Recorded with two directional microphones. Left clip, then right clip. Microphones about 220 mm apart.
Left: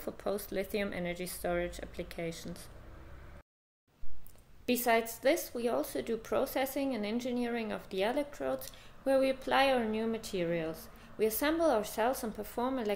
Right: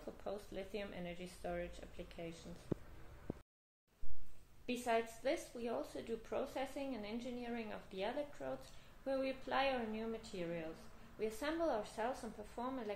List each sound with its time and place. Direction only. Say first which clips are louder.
0.2 s speech: left 11 dB; 50° left (ahead or behind)
4.6 s speech: left 9 dB; 50° left (ahead or behind)